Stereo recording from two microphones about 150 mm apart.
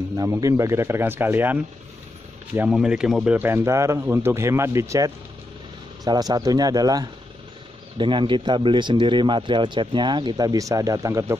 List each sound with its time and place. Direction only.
0.2 s speech: 20° right (ahead or behind)
2.7 s speech: 5° right (ahead or behind)
3.3 s a man's voice: 15° right (ahead or behind)